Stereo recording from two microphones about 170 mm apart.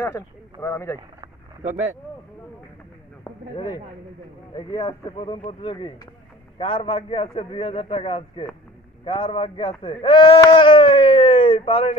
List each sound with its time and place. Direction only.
0.0 s speech: 15° left (ahead or behind)
3.5 s a man's voice: 25° left (ahead or behind)
10.4 s a sound: 30° left (ahead or behind)